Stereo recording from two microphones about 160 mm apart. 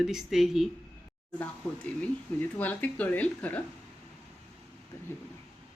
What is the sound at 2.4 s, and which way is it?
A woman's voice, 10° left (ahead or behind).